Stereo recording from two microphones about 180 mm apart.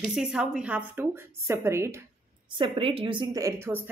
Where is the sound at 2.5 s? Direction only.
30° right (ahead or behind).